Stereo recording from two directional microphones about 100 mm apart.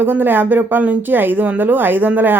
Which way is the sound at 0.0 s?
20° right (ahead or behind).